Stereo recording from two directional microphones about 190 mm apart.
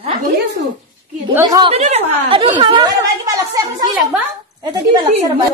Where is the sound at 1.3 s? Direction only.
15° right (ahead or behind).